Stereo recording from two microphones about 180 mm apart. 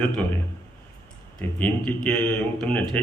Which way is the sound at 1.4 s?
10° left (ahead or behind).